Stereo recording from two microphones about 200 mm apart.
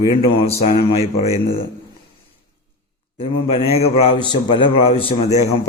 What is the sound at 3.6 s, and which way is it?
A man's voice, 30° left (ahead or behind).